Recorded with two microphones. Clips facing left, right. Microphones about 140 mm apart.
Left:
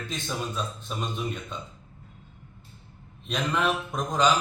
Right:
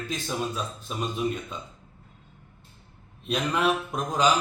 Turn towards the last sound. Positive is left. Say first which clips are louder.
# even
turn(degrees=-5)  # may be behind; listen again after turning